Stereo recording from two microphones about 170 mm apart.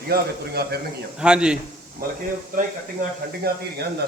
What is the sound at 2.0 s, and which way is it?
Speech, 60° right (ahead or behind).